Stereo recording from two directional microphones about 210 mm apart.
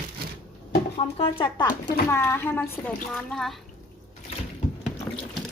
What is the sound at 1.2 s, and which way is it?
A child's voice, 20° left (ahead or behind).